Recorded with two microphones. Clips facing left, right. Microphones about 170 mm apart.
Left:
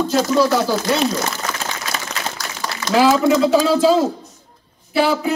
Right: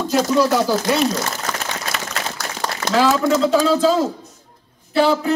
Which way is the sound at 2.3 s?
65° right (ahead or behind).